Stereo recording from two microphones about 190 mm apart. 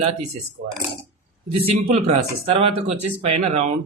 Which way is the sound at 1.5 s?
30° right (ahead or behind).